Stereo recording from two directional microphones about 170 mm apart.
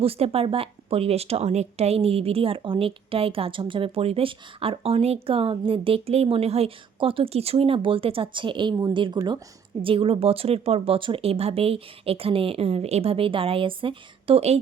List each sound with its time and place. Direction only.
0.0 s speech: 35° right (ahead or behind)